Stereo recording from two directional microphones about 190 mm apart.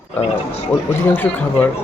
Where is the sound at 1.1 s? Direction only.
10° left (ahead or behind).